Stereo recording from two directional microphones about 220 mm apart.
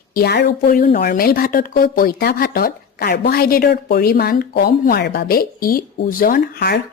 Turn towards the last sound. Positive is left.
turn(degrees=45)  # may be behind; listen again after turning